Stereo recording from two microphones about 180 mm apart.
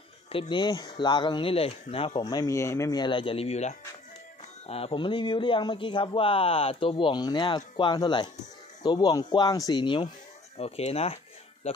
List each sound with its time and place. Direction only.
0.3 s speech: 30° left (ahead or behind)